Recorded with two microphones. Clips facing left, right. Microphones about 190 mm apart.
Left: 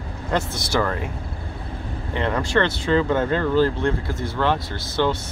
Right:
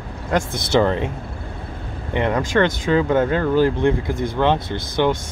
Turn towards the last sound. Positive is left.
turn(degrees=-20)  # may be behind; listen again after turning